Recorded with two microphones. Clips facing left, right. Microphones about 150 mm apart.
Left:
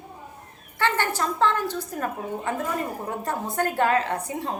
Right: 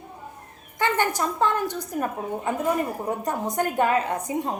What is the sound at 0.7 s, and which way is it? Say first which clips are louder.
A woman's voice: right 1 dB; 15° right (ahead or behind).